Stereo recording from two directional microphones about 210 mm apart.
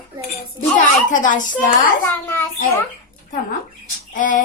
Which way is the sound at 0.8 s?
40° left (ahead or behind).